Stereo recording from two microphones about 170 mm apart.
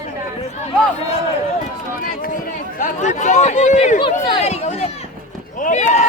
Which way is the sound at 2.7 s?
50° left (ahead or behind).